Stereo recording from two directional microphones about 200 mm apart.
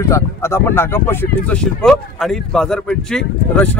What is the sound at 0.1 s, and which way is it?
Speech, 15° left (ahead or behind).